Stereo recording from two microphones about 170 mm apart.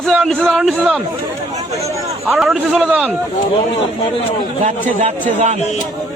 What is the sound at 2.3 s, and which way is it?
Speech, centre (ahead or behind).